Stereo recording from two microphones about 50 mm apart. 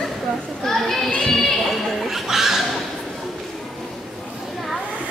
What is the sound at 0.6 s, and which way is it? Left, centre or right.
Children playing, centre.